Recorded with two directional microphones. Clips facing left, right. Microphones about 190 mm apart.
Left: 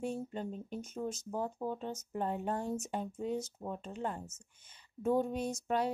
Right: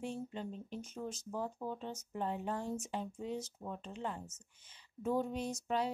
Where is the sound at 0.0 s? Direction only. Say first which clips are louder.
Left 4 dB; 45° left (ahead or behind).